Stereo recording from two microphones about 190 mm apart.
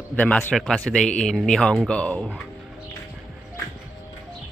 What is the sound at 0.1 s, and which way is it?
A man's voice, 10° left (ahead or behind).